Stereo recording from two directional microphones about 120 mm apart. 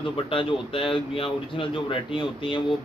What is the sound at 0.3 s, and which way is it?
Speech, 45° left (ahead or behind).